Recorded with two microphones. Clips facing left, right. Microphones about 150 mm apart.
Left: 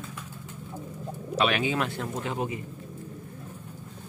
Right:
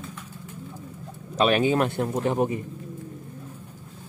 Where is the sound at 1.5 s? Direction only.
40° right (ahead or behind).